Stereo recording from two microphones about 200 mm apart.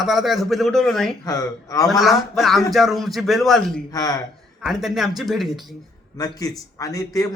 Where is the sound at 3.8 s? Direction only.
20° left (ahead or behind).